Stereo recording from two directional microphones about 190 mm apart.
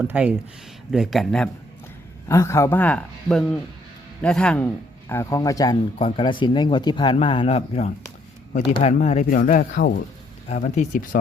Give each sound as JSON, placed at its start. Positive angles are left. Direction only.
{"t": 0.0, "sound": "speech", "side_deg": -10}
{"t": 2.2, "sound": "a man's voice", "side_deg": 15}